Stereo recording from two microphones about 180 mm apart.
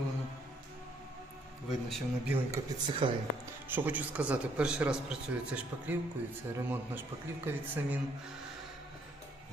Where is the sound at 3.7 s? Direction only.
10° right (ahead or behind).